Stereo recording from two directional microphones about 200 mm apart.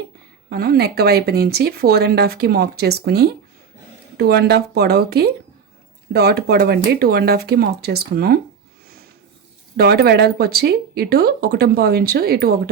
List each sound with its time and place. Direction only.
0.5 s speech: 50° right (ahead or behind)
9.7 s speech: 50° right (ahead or behind)